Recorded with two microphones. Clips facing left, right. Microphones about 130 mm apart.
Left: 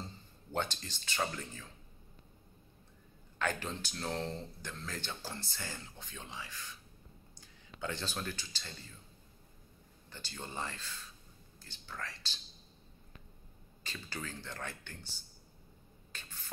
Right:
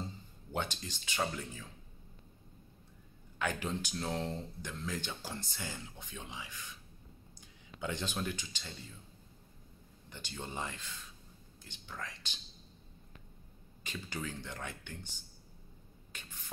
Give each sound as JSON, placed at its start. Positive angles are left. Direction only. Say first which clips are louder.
{"t": 0.0, "sound": "speech", "louder": "right 3 dB", "side_deg": -10}
{"t": 3.3, "sound": "speech", "louder": "right 1 dB", "side_deg": -10}
{"t": 10.0, "sound": "speech", "louder": "right 2 dB", "side_deg": -15}
{"t": 13.8, "sound": "speech", "louder": "right 3 dB", "side_deg": -15}
{"t": 16.1, "sound": "a sound", "louder": "left 1 dB", "side_deg": -15}